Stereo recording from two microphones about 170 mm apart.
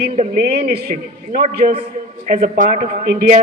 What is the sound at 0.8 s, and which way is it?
A man's voice, 60° right (ahead or behind).